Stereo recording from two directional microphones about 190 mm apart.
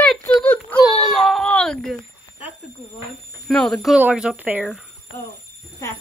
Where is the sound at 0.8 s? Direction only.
Centre (ahead or behind).